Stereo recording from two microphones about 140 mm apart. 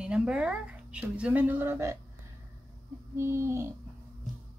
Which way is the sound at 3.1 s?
20° right (ahead or behind).